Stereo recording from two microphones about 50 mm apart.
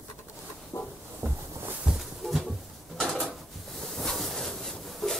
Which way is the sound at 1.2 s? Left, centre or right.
Right.